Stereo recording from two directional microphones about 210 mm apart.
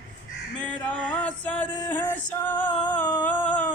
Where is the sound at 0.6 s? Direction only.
5° left (ahead or behind).